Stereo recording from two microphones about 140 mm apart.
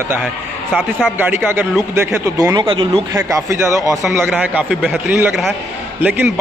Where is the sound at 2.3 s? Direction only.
30° right (ahead or behind).